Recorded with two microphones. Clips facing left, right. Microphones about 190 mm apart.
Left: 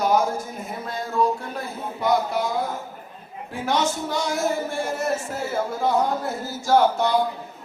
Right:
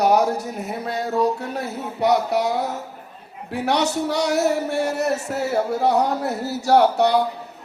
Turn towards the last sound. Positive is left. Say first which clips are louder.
# right 3 dB
turn(degrees=-70)  # may be behind; listen again after turning